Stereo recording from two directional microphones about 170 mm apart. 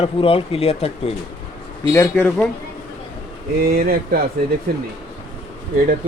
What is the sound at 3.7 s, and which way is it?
Speech, 60° right (ahead or behind).